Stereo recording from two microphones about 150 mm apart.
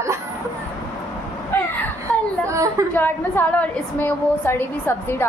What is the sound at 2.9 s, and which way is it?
A woman's voice, 15° left (ahead or behind).